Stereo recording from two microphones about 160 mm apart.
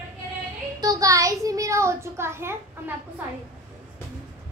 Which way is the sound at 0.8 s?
20° right (ahead or behind).